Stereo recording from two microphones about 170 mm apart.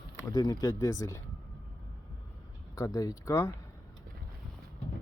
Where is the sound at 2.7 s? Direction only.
20° left (ahead or behind).